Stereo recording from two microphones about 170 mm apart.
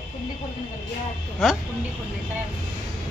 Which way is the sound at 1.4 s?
Centre (ahead or behind).